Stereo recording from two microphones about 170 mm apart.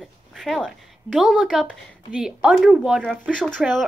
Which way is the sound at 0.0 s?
Centre (ahead or behind).